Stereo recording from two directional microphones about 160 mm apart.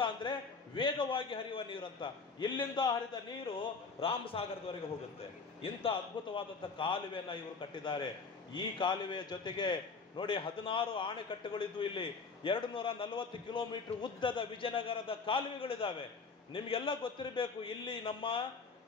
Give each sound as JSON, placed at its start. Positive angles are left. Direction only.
{"t": 0.0, "sound": "a man's voice", "side_deg": 30}
{"t": 4.0, "sound": "a man's voice", "side_deg": 35}